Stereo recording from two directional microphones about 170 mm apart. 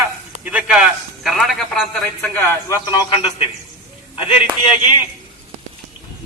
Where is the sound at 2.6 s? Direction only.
20° left (ahead or behind).